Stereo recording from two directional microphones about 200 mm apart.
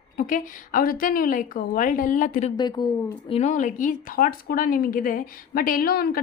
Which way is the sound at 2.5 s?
20° left (ahead or behind).